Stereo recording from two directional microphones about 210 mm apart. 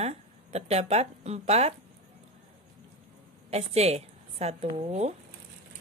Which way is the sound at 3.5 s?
30° right (ahead or behind).